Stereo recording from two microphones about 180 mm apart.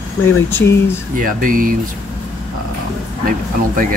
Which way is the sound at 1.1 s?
50° right (ahead or behind).